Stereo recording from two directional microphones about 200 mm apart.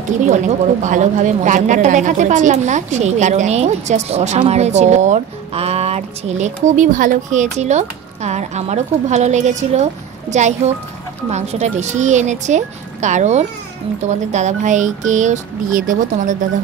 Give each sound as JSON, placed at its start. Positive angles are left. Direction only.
{"t": 0.8, "sound": "a woman's voice", "side_deg": -40}